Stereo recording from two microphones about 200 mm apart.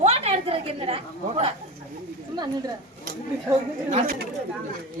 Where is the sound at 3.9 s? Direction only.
35° right (ahead or behind).